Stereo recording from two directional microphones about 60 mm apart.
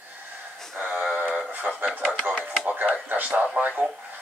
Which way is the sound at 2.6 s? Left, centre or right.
Right.